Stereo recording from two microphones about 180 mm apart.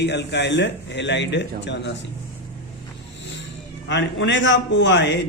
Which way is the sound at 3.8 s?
80° left.